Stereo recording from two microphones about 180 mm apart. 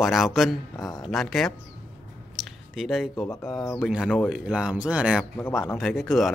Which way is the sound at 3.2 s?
15° left (ahead or behind).